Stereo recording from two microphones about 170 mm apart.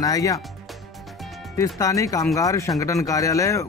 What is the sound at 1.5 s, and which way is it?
Speech, 20° left (ahead or behind).